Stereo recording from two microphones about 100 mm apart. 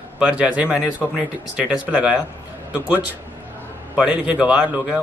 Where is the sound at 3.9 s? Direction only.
10° right (ahead or behind).